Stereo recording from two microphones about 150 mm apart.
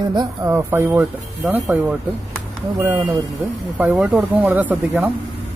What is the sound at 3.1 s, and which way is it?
Speech, 10° right (ahead or behind).